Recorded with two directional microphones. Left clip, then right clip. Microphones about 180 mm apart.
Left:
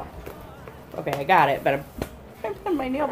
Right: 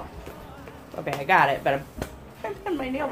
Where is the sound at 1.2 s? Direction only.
10° left (ahead or behind).